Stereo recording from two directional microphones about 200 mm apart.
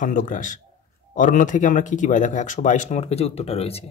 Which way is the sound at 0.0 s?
40° left (ahead or behind).